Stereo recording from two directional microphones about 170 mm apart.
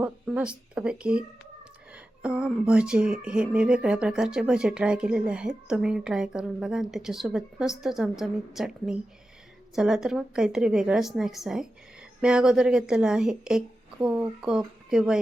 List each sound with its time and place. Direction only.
0.0 s speech: 5° right (ahead or behind)